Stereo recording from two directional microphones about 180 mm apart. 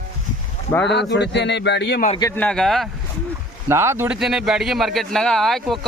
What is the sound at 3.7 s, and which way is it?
Speech, 15° right (ahead or behind).